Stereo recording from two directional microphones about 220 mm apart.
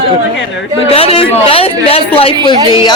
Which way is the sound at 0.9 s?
25° left (ahead or behind).